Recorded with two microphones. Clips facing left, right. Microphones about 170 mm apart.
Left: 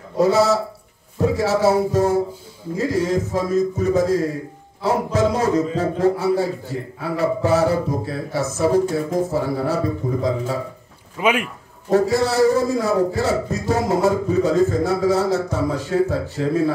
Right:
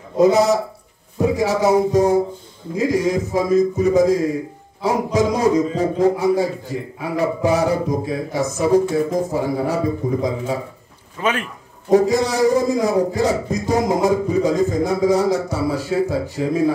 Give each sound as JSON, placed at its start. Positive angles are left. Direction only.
{"t": 0.2, "sound": "a man's voice", "side_deg": -15}
{"t": 11.1, "sound": "a man's voice", "side_deg": 10}
{"t": 11.9, "sound": "a man's voice", "side_deg": -15}